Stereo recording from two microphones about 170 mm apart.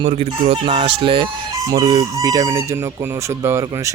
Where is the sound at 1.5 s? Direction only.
20° right (ahead or behind).